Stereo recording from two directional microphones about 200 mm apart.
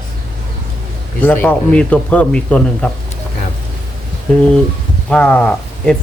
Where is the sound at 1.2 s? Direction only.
10° left (ahead or behind).